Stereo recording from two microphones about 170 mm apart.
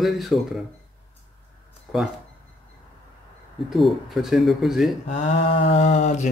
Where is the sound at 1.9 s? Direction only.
Centre (ahead or behind).